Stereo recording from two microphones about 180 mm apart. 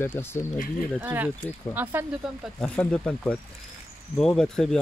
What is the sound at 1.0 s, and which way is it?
Speech, 10° right (ahead or behind).